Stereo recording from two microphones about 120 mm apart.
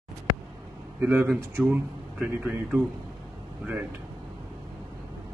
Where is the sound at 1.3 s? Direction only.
5° right (ahead or behind).